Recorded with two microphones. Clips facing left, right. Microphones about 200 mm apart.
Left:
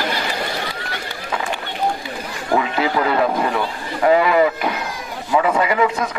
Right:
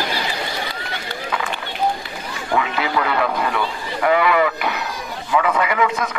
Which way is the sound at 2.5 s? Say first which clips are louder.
Left 3 dB; 35° left (ahead or behind).